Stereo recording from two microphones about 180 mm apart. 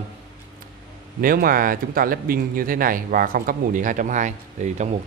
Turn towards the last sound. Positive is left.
turn(degrees=-40)  # may be behind; listen again after turning